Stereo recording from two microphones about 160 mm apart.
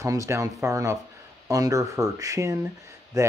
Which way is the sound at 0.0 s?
20° right (ahead or behind).